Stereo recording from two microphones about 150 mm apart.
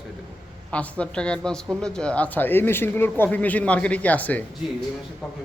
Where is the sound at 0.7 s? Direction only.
10° left (ahead or behind).